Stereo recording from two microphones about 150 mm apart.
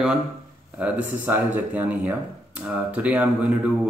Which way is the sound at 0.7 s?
10° right (ahead or behind).